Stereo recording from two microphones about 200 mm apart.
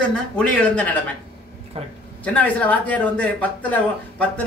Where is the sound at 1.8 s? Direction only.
30° right (ahead or behind).